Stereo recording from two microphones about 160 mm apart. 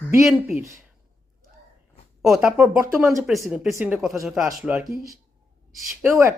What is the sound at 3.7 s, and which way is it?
Speech, 10° right (ahead or behind).